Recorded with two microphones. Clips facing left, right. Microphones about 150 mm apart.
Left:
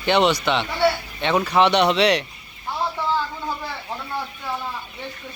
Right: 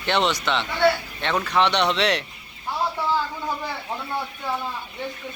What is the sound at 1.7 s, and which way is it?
Speech, 5° left (ahead or behind).